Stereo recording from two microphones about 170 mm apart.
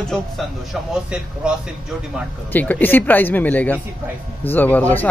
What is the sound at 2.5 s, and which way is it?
Speech, 10° left (ahead or behind).